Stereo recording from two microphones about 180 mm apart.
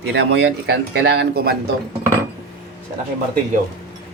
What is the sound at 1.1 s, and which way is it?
Speech, 60° right (ahead or behind).